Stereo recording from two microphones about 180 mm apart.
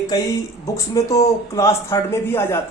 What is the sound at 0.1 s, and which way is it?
A woman's voice, 20° left (ahead or behind).